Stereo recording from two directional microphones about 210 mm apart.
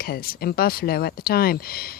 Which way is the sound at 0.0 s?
45° left (ahead or behind).